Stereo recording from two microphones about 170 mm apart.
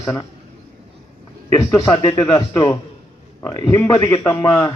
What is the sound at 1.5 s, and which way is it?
A man's voice, 20° left (ahead or behind).